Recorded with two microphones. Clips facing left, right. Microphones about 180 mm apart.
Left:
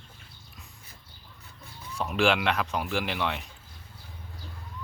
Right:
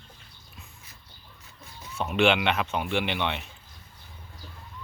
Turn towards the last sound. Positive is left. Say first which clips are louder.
# right 2 dB
turn(degrees=0)  # may be behind; listen again after turning